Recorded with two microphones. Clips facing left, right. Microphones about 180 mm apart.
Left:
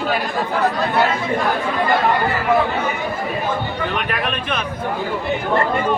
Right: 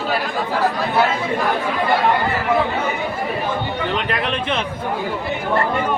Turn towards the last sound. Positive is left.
turn(degrees=-25)  # may be behind; listen again after turning